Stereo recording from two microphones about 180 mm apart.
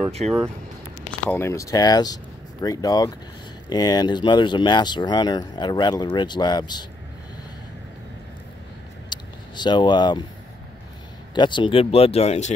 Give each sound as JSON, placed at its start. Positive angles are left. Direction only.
{"t": 1.3, "sound": "speech", "side_deg": 15}
{"t": 9.1, "sound": "a sound", "side_deg": 25}
{"t": 11.3, "sound": "speech", "side_deg": 25}